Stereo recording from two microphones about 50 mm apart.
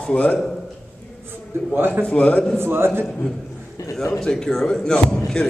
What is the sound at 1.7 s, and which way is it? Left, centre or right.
Speech, right.